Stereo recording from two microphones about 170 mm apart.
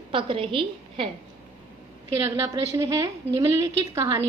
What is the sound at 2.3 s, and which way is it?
A woman's voice, 20° right (ahead or behind).